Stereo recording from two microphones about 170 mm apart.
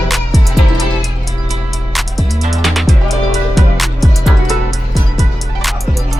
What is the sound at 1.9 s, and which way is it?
Music, centre (ahead or behind).